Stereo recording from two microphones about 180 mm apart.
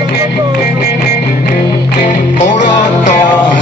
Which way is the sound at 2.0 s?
45° left (ahead or behind).